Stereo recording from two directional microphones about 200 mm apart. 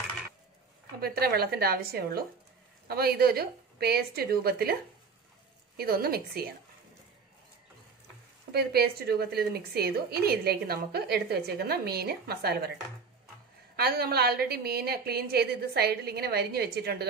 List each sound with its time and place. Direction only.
1.0 s a woman's voice: 50° right (ahead or behind)
5.8 s a woman's voice: 50° right (ahead or behind)
8.5 s a woman's voice: 50° right (ahead or behind)
13.7 s a woman's voice: 50° right (ahead or behind)